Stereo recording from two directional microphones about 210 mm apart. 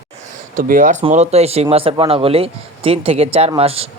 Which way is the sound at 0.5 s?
40° right (ahead or behind).